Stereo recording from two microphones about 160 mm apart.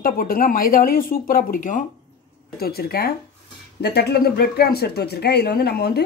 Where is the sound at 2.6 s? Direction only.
75° left (ahead or behind).